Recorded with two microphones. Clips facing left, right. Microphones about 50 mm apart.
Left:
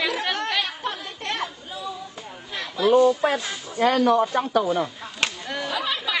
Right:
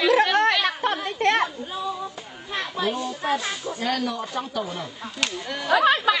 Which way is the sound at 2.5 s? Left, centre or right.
Right.